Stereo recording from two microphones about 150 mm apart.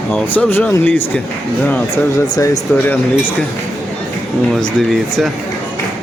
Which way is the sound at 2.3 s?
25° left (ahead or behind).